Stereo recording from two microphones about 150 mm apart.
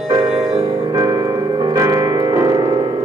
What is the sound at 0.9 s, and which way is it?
Music, 25° right (ahead or behind).